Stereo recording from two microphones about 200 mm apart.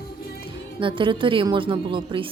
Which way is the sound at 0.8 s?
25° right (ahead or behind).